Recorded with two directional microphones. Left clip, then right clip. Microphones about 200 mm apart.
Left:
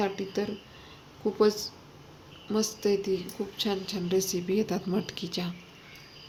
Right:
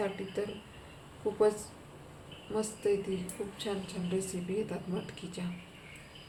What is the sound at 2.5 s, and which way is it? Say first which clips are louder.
Speech: left 4 dB; 50° left (ahead or behind).